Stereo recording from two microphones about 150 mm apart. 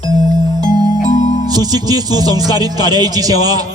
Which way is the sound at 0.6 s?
25° right (ahead or behind).